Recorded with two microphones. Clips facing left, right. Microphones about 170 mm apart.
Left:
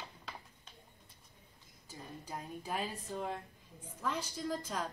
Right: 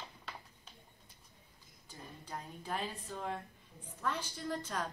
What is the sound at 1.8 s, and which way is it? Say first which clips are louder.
A woman's voice: left 3 dB; 10° left (ahead or behind).